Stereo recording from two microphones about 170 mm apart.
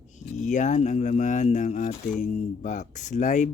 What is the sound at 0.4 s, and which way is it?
Speech, 45° left (ahead or behind).